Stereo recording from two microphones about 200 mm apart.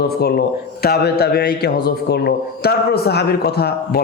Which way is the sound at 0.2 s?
50° left (ahead or behind).